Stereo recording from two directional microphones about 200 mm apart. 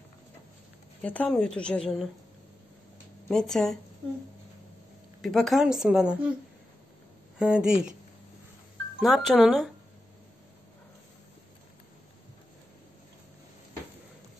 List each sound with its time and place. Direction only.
1.0 s a woman's voice: 5° left (ahead or behind)
3.3 s a woman's voice: centre (ahead or behind)
5.2 s a woman's voice: centre (ahead or behind)
7.3 s a woman's voice: 5° right (ahead or behind)
9.0 s a woman's voice: centre (ahead or behind)